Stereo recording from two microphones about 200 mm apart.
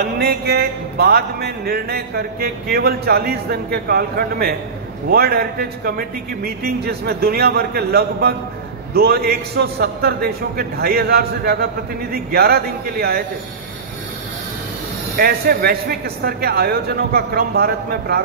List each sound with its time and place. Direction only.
0.0 s music: 50° right (ahead or behind)
15.1 s music: 50° right (ahead or behind)